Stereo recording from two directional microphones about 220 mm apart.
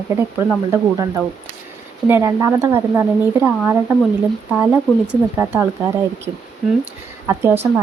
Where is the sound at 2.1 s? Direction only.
15° right (ahead or behind).